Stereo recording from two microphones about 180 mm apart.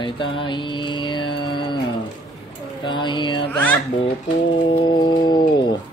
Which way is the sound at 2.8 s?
25° left (ahead or behind).